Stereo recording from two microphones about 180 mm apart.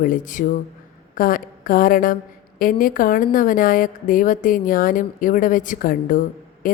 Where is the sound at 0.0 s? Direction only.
45° left (ahead or behind).